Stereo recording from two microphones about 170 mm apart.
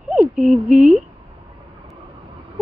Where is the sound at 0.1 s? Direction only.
5° right (ahead or behind).